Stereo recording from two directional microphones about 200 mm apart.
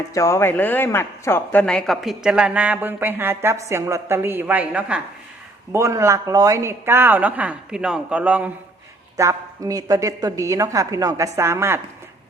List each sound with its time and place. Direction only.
0.1 s speech: 15° left (ahead or behind); by 11.8 s 15° right (ahead or behind)